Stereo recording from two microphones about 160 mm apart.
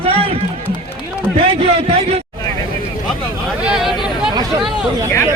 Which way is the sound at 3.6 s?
5° right (ahead or behind).